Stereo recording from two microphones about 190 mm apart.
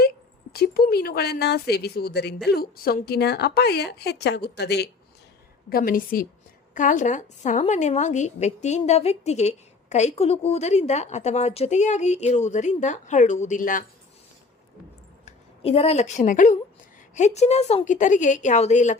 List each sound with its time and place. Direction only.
0.5 s speech: 55° left (ahead or behind)
5.6 s a woman's voice: 50° left (ahead or behind)
15.2 s a woman's voice: 35° left (ahead or behind)